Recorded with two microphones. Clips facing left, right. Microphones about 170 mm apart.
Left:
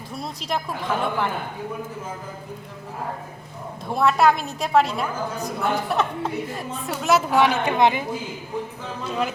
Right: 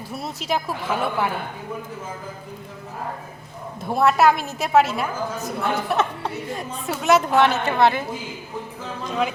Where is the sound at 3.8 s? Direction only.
Centre (ahead or behind); by 8.1 s 15° left (ahead or behind).